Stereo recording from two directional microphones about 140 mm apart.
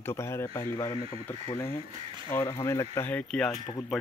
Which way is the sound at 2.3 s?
20° left (ahead or behind).